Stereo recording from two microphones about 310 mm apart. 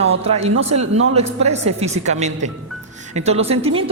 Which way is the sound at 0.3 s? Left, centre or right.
Centre.